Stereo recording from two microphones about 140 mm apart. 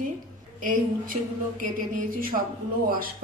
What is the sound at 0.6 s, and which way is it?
A woman's voice, 80° right.